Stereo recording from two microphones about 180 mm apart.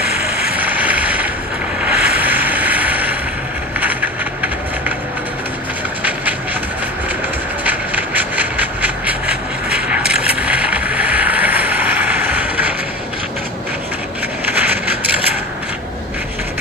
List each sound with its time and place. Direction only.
0.6 s boat: 10° right (ahead or behind)
7.6 s vehicle: 10° right (ahead or behind)
14.4 s vehicle: 10° right (ahead or behind)